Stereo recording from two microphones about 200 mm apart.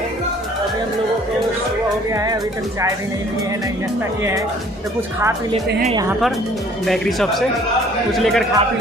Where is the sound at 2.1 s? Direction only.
15° right (ahead or behind).